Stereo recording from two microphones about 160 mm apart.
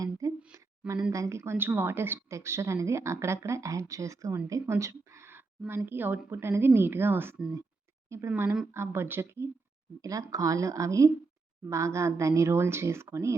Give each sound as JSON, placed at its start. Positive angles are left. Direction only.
{"t": 0.0, "sound": "a sound", "side_deg": -20}
{"t": 1.1, "sound": "a woman's voice", "side_deg": -20}
{"t": 8.7, "sound": "a woman's voice", "side_deg": -15}